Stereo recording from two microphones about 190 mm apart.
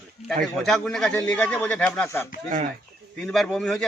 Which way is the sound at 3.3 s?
5° left (ahead or behind).